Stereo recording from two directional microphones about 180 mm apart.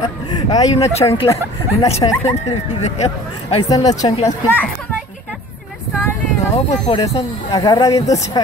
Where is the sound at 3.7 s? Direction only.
20° left (ahead or behind).